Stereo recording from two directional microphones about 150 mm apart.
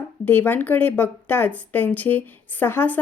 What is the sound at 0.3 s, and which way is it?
Speech, 15° left (ahead or behind).